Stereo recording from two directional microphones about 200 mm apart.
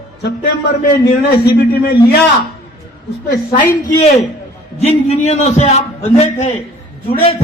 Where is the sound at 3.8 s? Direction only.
35° left (ahead or behind).